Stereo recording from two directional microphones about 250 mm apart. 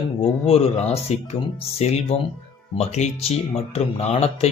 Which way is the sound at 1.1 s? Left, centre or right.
Left.